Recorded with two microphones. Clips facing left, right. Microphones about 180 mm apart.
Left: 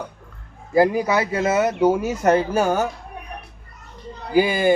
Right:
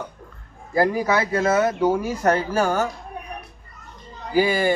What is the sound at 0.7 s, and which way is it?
Speech, 15° left (ahead or behind).